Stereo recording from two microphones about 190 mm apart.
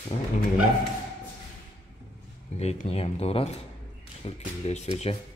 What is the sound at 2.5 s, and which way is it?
Speech, 35° left (ahead or behind).